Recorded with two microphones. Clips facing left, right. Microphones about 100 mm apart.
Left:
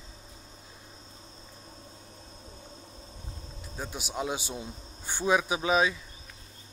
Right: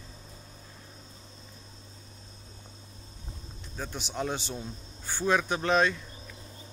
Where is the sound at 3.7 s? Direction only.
10° left (ahead or behind).